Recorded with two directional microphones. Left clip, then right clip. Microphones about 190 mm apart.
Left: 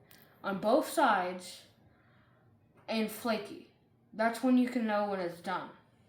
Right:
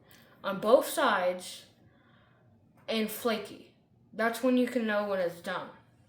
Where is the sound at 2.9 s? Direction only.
30° right (ahead or behind).